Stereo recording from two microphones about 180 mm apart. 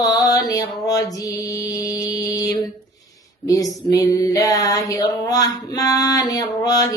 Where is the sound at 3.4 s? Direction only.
20° left (ahead or behind).